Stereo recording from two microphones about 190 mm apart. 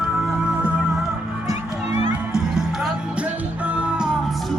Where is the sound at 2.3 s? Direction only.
Centre (ahead or behind).